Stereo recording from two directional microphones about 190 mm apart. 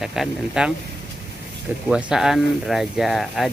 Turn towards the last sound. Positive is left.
turn(degrees=0)  # may be behind; listen again after turning